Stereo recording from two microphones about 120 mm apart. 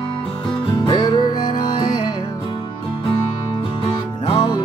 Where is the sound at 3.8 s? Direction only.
40° left (ahead or behind).